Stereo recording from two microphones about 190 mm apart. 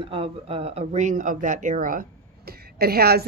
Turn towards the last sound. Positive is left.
turn(degrees=-55)  # may be behind; listen again after turning